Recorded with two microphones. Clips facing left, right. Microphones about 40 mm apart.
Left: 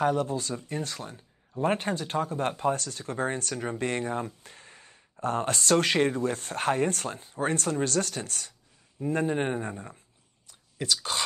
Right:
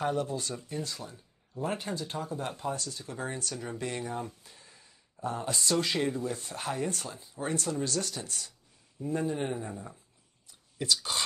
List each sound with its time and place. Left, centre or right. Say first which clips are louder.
0.2 s speech: left 4 dB; left